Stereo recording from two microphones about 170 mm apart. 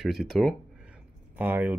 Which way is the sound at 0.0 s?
5° right (ahead or behind).